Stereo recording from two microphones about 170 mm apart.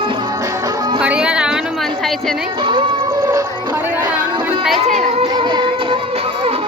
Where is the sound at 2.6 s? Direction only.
30° right (ahead or behind).